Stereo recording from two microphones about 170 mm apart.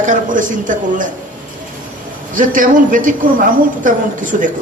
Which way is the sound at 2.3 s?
50° right (ahead or behind).